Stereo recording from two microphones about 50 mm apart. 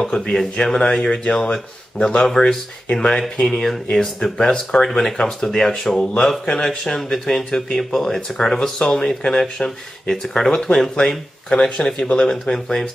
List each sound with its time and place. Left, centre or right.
0.0 s speech: centre
8.7 s speech: centre